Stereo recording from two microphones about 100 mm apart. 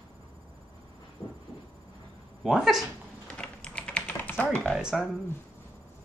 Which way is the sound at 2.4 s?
5° right (ahead or behind).